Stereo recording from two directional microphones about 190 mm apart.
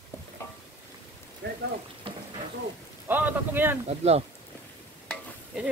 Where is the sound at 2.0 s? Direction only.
30° right (ahead or behind).